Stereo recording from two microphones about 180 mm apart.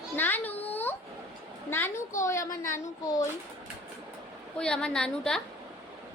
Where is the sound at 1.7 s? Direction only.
15° left (ahead or behind).